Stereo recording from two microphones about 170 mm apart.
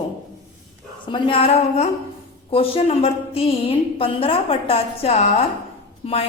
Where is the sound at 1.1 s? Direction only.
35° left (ahead or behind).